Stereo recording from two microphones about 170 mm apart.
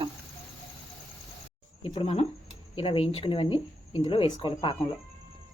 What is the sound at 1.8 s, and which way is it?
Speech, 35° left (ahead or behind).